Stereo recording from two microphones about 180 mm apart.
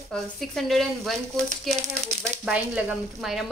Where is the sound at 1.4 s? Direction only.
40° right (ahead or behind).